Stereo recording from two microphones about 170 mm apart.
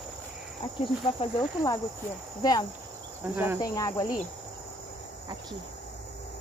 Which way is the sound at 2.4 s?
25° left (ahead or behind).